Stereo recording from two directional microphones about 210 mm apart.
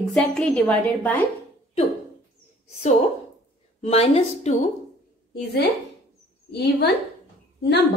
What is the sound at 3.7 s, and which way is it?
Speech, 30° left (ahead or behind).